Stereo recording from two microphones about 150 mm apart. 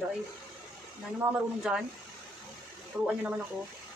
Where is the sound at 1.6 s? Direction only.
5° right (ahead or behind).